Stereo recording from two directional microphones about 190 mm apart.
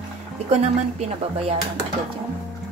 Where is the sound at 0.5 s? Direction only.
35° right (ahead or behind).